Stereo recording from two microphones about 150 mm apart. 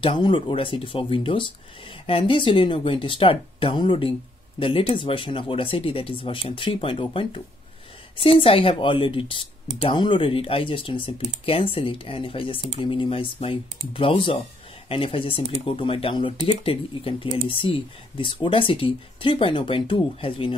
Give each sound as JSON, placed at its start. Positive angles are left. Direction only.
{"t": 0.0, "sound": "speech", "side_deg": 35}